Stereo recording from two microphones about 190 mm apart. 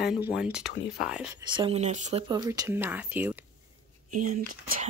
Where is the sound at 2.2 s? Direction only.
20° right (ahead or behind).